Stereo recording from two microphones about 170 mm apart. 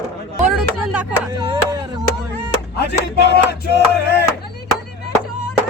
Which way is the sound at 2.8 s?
80° left.